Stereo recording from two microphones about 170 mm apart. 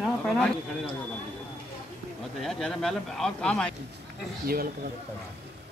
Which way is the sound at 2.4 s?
5° left (ahead or behind).